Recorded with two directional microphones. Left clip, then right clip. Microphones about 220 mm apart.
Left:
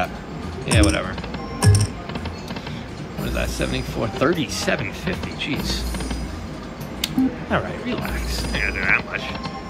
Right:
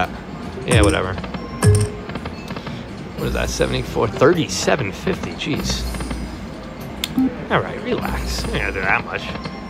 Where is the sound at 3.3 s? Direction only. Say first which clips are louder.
Right 5 dB; 25° right (ahead or behind).